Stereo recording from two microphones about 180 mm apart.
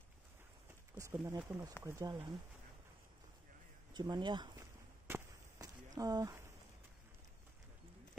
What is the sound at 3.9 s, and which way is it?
Speech, 25° right (ahead or behind).